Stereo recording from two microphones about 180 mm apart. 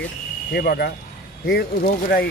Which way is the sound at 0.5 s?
60° left (ahead or behind).